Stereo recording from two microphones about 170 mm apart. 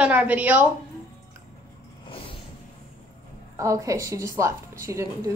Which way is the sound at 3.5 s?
20° right (ahead or behind).